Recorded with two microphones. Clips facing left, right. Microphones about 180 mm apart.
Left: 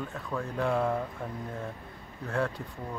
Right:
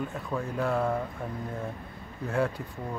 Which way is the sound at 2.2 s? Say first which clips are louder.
Right 3 dB; 5° right (ahead or behind).